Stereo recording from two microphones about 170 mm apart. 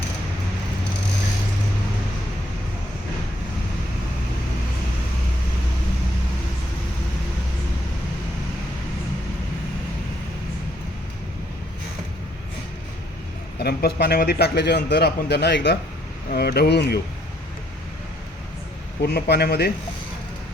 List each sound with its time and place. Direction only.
13.6 s a man's voice: 75° left (ahead or behind)
16.3 s a man's voice: 70° left (ahead or behind)
19.0 s a man's voice: 70° left (ahead or behind)